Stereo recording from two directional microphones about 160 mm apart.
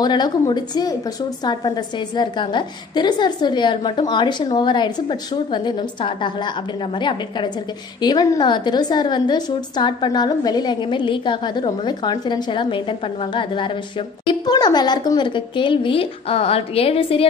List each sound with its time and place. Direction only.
0.0 s a woman's voice: 25° left (ahead or behind)